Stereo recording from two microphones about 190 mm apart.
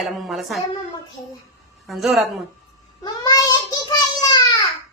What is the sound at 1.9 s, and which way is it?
Speech, centre (ahead or behind).